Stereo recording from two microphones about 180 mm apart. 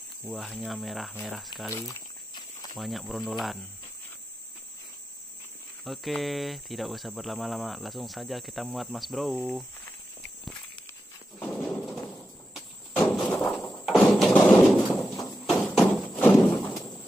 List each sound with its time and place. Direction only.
0.2 s cricket: 5° right (ahead or behind)
1.7 s a sound: 20° left (ahead or behind)
2.8 s cricket: centre (ahead or behind)
5.9 s cricket: centre (ahead or behind)
10.4 s walk: 5° left (ahead or behind)
11.5 s a sound: centre (ahead or behind)